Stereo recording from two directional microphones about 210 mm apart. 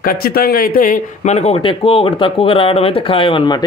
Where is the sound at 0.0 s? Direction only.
45° left (ahead or behind).